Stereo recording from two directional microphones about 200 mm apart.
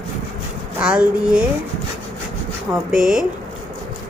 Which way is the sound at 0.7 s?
5° right (ahead or behind).